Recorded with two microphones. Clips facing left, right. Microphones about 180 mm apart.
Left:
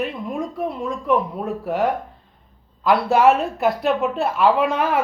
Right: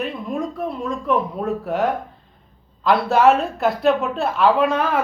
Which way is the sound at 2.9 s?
15° left (ahead or behind).